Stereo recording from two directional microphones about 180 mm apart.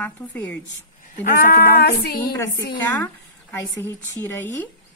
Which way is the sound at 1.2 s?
55° left (ahead or behind).